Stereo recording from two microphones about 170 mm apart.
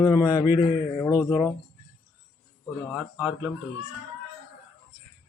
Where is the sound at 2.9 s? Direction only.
5° right (ahead or behind).